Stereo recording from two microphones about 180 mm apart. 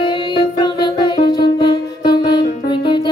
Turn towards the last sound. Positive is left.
turn(degrees=25)  # may be behind; listen again after turning